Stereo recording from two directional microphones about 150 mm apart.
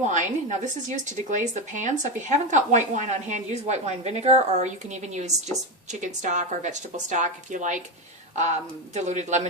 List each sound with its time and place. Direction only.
0.0 s a woman's voice: 55° right (ahead or behind)
9.0 s a woman's voice: 50° right (ahead or behind)